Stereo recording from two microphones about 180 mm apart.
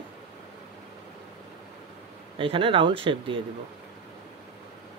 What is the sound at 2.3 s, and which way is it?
Speech, 30° right (ahead or behind).